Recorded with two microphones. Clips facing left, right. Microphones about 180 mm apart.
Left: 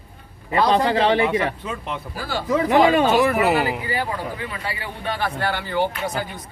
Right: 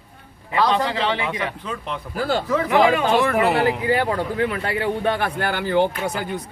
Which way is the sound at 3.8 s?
70° right (ahead or behind).